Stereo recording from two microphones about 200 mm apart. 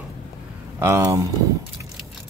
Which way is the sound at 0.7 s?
15° right (ahead or behind).